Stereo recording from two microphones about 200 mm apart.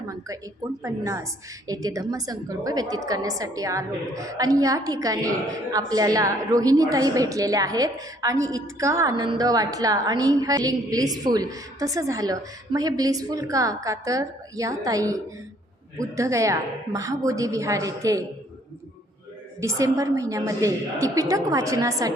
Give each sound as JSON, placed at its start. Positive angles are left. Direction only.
{"t": 0.8, "sound": "a woman's voice", "side_deg": -15}
{"t": 19.5, "sound": "a woman's voice", "side_deg": -15}